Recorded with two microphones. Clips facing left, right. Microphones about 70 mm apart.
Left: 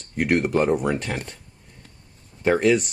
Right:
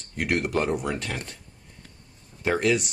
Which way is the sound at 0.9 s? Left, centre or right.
Centre.